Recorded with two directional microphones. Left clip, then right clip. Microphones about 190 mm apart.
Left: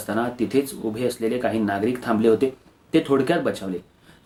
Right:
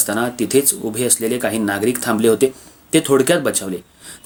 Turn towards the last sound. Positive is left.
turn(degrees=-40)  # may be behind; listen again after turning